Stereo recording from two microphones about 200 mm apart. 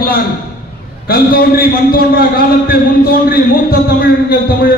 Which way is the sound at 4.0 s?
45° left (ahead or behind).